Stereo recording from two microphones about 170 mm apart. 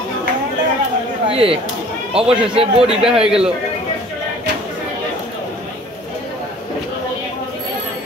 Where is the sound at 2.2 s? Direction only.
5° right (ahead or behind).